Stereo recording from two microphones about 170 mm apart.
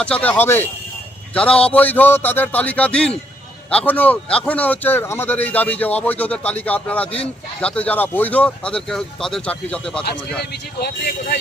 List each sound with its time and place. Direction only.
0.0 s a man's voice: 5° left (ahead or behind)
10.5 s speech: 65° left (ahead or behind)